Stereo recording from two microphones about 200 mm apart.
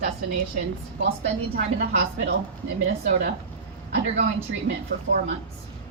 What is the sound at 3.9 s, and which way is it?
Speech, 35° right (ahead or behind).